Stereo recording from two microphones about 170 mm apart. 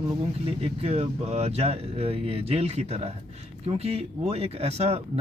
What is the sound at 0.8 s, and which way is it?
Speech, 40° right (ahead or behind).